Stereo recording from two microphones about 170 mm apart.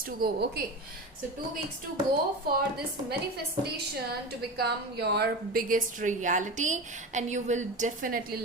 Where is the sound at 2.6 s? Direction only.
65° right (ahead or behind).